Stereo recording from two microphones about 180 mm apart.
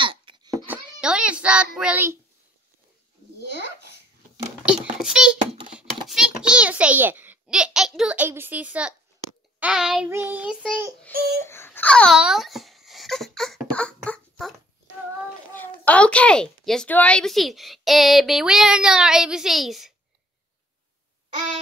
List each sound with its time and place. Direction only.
0.0 s babbling: 25° right (ahead or behind)
0.7 s a child's voice: 5° right (ahead or behind)
5.0 s a child's voice: 5° right (ahead or behind)
6.0 s a sound: 5° right (ahead or behind)
9.6 s a child's voice: 5° right (ahead or behind)
10.0 s child singing: 15° right (ahead or behind)
11.1 s a sound: 55° right (ahead or behind)
11.4 s speech: 15° left (ahead or behind)
14.0 s a sound: 5° left (ahead or behind)
15.5 s a child's voice: 10° left (ahead or behind)